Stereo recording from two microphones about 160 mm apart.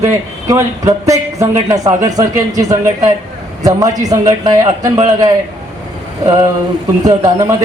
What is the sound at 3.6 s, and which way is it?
A man's voice, 25° right (ahead or behind).